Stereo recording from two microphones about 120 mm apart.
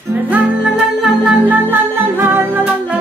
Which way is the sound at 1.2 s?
15° right (ahead or behind).